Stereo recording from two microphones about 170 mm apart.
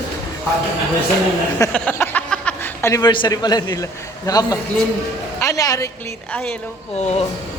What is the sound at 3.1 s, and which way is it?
A man's voice, 25° left (ahead or behind).